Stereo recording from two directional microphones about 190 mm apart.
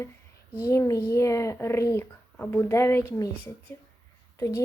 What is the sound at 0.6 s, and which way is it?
A child's voice, 15° left (ahead or behind).